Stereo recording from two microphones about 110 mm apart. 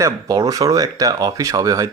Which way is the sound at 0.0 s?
30° right (ahead or behind).